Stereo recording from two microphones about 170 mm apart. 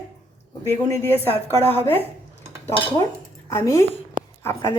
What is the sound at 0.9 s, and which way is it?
Speech, 10° left (ahead or behind).